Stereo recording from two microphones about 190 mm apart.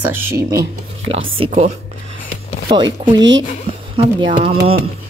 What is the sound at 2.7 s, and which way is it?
Speech, 20° right (ahead or behind).